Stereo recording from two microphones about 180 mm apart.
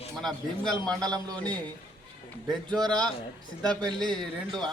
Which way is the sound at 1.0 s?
20° right (ahead or behind).